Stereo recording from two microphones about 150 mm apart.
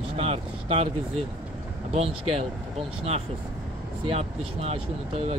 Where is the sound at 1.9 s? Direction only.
40° right (ahead or behind).